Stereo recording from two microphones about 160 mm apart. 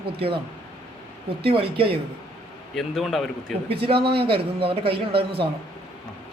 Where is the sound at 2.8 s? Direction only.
Centre (ahead or behind).